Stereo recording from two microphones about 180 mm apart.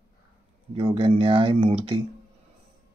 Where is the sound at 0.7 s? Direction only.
30° right (ahead or behind).